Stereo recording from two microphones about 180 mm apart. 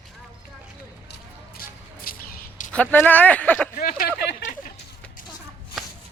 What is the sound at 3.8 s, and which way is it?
Speech, 50° left (ahead or behind).